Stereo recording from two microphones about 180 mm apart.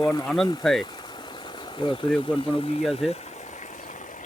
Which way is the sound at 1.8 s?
25° left (ahead or behind).